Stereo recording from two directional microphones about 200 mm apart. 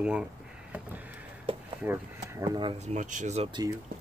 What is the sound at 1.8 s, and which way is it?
Speech, 10° right (ahead or behind).